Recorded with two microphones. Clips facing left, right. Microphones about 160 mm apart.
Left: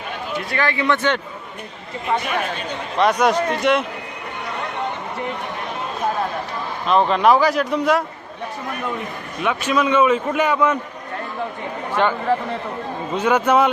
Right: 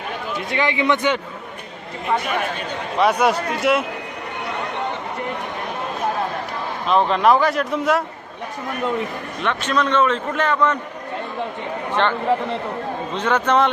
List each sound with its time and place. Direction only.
0.5 s a man's voice: 20° right (ahead or behind)
3.0 s speech: 5° right (ahead or behind)
6.8 s speech: centre (ahead or behind)
9.4 s a man's voice: 10° left (ahead or behind)
12.0 s a man's voice: 10° left (ahead or behind)
13.1 s a man's voice: 10° left (ahead or behind)